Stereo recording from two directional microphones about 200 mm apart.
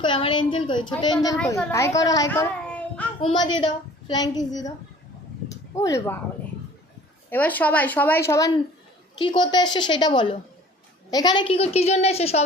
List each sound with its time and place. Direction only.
0.0 s a woman's voice: 25° left (ahead or behind)
2.6 s child singing: 5° left (ahead or behind)
3.2 s a woman's voice: 25° left (ahead or behind)
5.5 s a sound: 15° left (ahead or behind)
7.3 s a woman's voice: 10° left (ahead or behind); by 12.4 s 30° left (ahead or behind)